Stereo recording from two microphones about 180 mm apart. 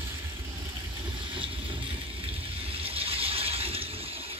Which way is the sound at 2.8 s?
30° right (ahead or behind).